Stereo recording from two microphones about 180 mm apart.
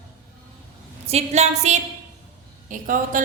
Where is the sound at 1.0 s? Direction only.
35° right (ahead or behind).